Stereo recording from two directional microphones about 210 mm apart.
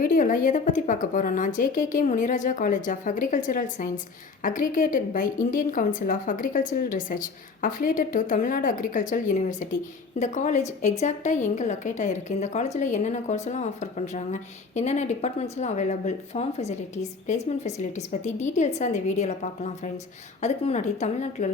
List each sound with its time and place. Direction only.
0.0 s a woman's voice: 40° left (ahead or behind)